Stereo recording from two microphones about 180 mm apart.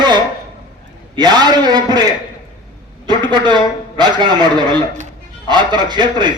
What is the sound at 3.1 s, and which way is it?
A man's voice, 25° right (ahead or behind).